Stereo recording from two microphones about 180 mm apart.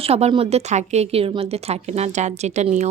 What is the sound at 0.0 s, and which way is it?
A woman's voice, 35° right (ahead or behind).